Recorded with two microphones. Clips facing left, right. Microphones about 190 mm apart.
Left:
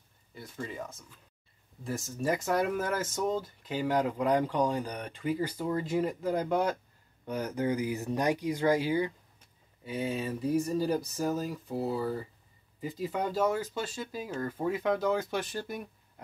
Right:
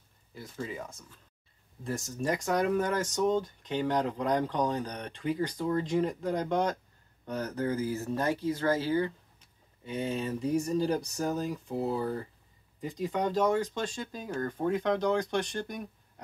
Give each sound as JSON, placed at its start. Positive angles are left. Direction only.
{"t": 0.3, "sound": "speech", "side_deg": 0}